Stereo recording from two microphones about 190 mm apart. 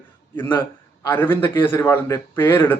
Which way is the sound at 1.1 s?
10° left (ahead or behind).